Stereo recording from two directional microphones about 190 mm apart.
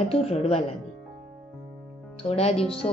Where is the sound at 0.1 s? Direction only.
30° left (ahead or behind).